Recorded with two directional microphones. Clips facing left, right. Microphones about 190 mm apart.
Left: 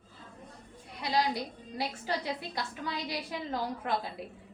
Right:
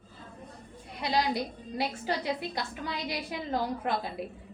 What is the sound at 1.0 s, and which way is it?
Speech, 20° right (ahead or behind).